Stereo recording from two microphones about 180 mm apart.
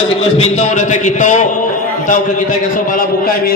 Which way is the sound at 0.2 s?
35° left (ahead or behind).